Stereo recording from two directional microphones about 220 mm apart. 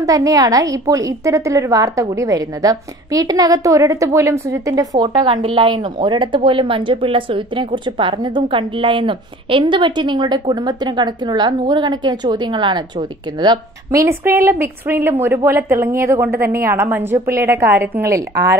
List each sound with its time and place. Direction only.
0.0 s a woman's voice: 15° right (ahead or behind)